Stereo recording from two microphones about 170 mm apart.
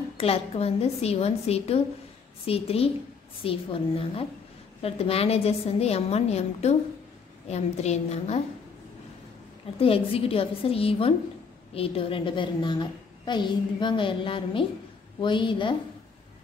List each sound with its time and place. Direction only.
0.2 s a woman's voice: 35° left (ahead or behind)
9.8 s a woman's voice: 35° left (ahead or behind)